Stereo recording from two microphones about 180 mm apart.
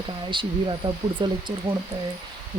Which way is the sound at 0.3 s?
25° right (ahead or behind).